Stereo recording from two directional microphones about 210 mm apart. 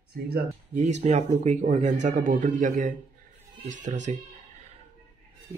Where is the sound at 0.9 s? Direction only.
35° right (ahead or behind).